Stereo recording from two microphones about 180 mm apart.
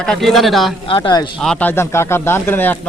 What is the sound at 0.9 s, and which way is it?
Speech, 25° left (ahead or behind).